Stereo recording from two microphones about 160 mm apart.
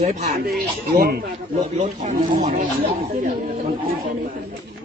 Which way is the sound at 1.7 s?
45° right (ahead or behind).